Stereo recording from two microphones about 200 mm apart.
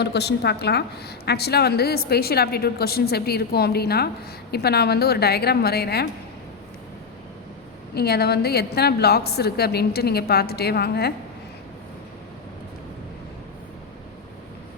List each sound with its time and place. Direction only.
0.0 s a woman's voice: 55° left (ahead or behind)
7.9 s a woman's voice: 50° left (ahead or behind)